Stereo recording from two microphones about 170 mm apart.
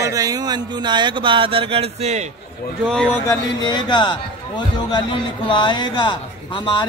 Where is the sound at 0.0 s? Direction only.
20° right (ahead or behind); by 2.2 s 40° right (ahead or behind).